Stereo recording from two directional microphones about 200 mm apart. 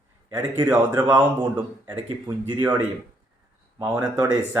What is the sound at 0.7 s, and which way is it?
Speech, 10° right (ahead or behind).